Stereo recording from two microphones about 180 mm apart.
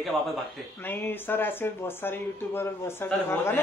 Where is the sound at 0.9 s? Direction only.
10° left (ahead or behind).